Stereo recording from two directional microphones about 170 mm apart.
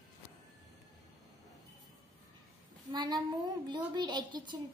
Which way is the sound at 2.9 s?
25° right (ahead or behind).